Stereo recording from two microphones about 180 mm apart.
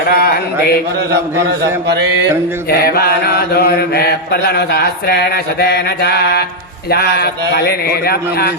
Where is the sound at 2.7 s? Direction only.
60° left (ahead or behind).